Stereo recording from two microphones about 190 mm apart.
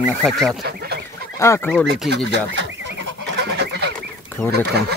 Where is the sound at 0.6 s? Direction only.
60° right (ahead or behind).